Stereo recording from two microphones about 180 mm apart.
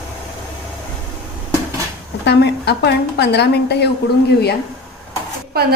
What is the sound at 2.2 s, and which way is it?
A woman's voice, 70° left (ahead or behind).